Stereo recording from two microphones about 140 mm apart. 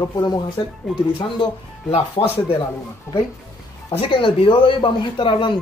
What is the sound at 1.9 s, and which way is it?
Speech, 45° left (ahead or behind).